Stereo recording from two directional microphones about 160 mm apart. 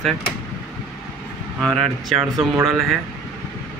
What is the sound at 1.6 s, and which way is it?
Speech, centre (ahead or behind).